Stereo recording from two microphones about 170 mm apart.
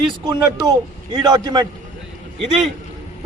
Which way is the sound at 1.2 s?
25° right (ahead or behind).